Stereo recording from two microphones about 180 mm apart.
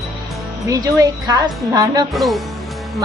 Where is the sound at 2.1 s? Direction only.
Centre (ahead or behind).